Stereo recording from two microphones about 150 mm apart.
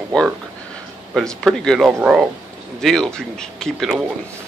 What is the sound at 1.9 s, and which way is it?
Speech, 10° right (ahead or behind).